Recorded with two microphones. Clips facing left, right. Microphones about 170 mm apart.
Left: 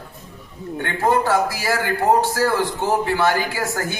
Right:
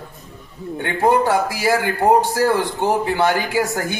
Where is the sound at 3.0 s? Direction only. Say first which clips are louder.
Right 1 dB; 15° right (ahead or behind).